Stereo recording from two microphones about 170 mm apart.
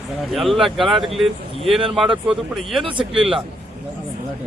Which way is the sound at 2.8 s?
30° right (ahead or behind).